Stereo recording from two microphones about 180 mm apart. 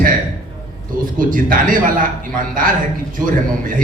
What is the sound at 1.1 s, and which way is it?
Speech, 50° right (ahead or behind).